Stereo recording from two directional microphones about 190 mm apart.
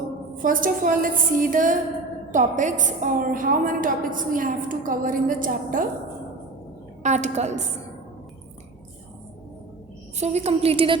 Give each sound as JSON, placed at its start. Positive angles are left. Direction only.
{"t": 0.4, "sound": "a woman's voice", "side_deg": -45}
{"t": 7.0, "sound": "a woman's voice", "side_deg": -40}
{"t": 10.2, "sound": "a woman's voice", "side_deg": -35}